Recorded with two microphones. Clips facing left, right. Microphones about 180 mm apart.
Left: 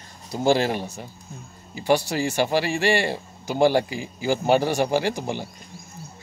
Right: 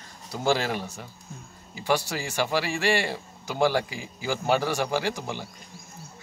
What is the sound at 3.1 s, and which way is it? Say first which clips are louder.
A man's voice: left 5 dB; 20° left (ahead or behind).